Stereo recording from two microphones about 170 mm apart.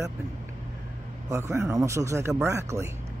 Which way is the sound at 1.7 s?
20° right (ahead or behind).